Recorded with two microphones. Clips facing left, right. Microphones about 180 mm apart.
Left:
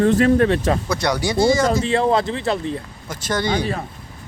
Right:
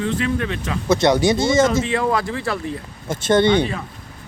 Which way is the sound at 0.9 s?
25° right (ahead or behind).